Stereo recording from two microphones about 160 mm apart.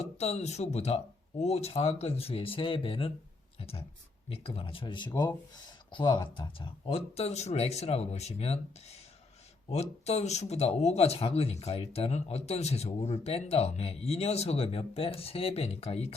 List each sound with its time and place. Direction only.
0.0 s speech: 40° left (ahead or behind)